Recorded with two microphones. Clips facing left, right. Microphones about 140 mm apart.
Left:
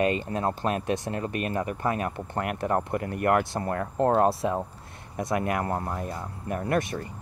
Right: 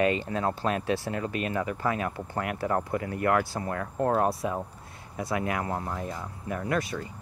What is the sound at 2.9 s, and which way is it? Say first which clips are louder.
Speech: left 2 dB; 50° left (ahead or behind).